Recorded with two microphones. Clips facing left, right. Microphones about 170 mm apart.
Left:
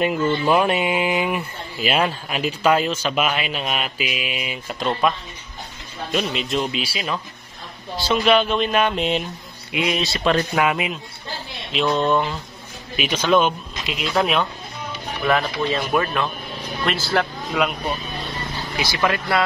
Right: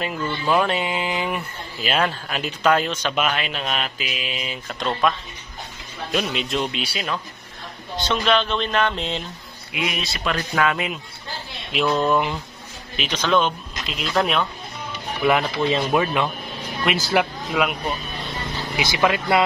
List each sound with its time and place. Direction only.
0.5 s speech: 15° left (ahead or behind)
6.1 s speech: centre (ahead or behind)
9.7 s speech: 25° left (ahead or behind)
10.5 s speech: 15° left (ahead or behind)
11.7 s speech: 5° right (ahead or behind)
12.9 s speech: 10° left (ahead or behind)
15.2 s speech: 15° right (ahead or behind)
17.5 s speech: centre (ahead or behind)
18.8 s speech: 15° right (ahead or behind)